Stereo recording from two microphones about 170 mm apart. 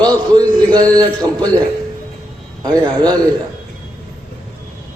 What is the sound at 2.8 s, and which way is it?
Speech, 25° right (ahead or behind).